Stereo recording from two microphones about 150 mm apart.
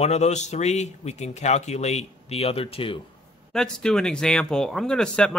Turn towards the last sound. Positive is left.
turn(degrees=5)  # may be behind; listen again after turning